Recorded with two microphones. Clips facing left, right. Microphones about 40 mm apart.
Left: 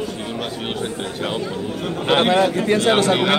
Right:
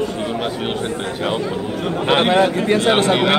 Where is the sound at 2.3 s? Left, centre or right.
Centre.